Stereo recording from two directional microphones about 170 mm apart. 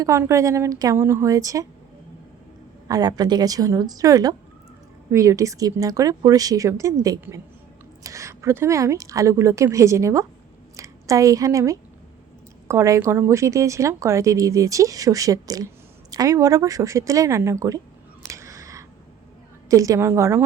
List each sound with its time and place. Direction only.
0.0 s speech: 15° right (ahead or behind)
2.8 s a woman's voice: 20° right (ahead or behind)
18.3 s a sound: 20° right (ahead or behind)
19.7 s speech: 20° right (ahead or behind)